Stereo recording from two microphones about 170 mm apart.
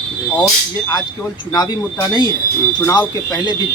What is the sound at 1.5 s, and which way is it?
Speech, 20° left (ahead or behind).